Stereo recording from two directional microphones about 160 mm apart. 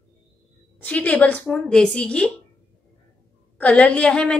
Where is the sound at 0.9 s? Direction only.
10° left (ahead or behind).